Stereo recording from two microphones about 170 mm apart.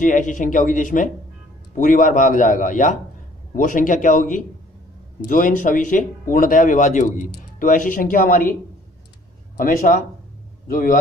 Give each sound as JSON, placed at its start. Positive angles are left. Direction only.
{"t": 0.0, "sound": "a man's voice", "side_deg": 50}
{"t": 9.6, "sound": "a man's voice", "side_deg": 55}